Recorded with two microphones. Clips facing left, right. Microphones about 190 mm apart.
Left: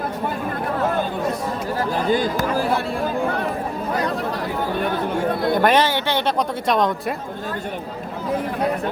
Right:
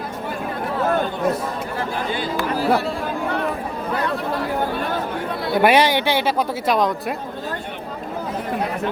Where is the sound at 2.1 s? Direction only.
45° left (ahead or behind).